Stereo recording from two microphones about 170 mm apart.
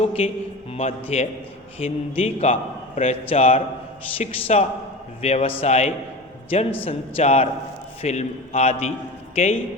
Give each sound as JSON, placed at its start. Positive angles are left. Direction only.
{"t": 0.0, "sound": "a man's voice", "side_deg": 35}